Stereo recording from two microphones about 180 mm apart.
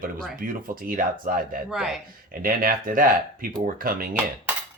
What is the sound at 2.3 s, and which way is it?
Speech, 50° right (ahead or behind).